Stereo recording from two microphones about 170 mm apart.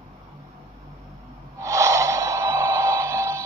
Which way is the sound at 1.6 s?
20° right (ahead or behind).